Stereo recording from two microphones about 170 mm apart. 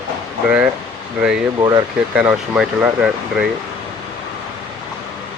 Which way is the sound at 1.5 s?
25° right (ahead or behind).